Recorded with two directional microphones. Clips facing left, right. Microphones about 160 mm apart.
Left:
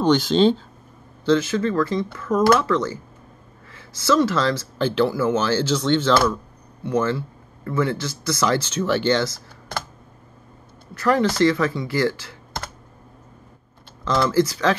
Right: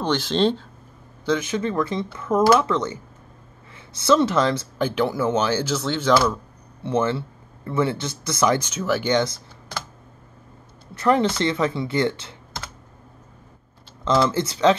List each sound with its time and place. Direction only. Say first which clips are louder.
0.0 s speech: left 4 dB; centre (ahead or behind)
1.2 s speech: left 4 dB; 15° right (ahead or behind)
6.8 s speech: even; 20° right (ahead or behind)
9.7 s typing: left 3 dB; 50° left (ahead or behind)
11.0 s speech: left 1 dB; 20° right (ahead or behind)
14.0 s speech: left 1 dB; 20° right (ahead or behind)